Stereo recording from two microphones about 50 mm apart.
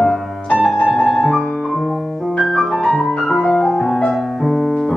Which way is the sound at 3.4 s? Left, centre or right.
Centre.